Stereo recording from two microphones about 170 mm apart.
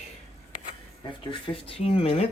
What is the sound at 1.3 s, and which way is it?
Speech, 30° left (ahead or behind).